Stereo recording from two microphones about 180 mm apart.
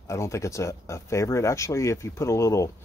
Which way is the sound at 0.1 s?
15° left (ahead or behind).